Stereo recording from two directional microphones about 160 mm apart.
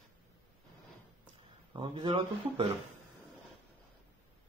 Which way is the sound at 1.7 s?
30° right (ahead or behind).